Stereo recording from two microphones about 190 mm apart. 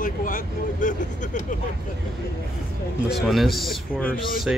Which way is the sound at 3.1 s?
Centre (ahead or behind).